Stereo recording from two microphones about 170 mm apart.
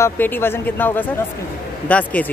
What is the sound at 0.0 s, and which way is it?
Speech, 10° left (ahead or behind).